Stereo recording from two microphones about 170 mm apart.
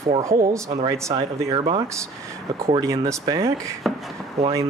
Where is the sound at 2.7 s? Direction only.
20° right (ahead or behind).